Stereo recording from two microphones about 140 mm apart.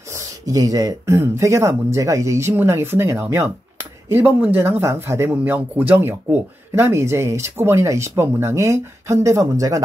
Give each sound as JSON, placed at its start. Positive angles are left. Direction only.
{"t": 0.1, "sound": "speech", "side_deg": -25}